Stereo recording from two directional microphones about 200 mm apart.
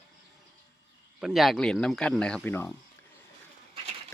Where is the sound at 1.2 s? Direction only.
Centre (ahead or behind).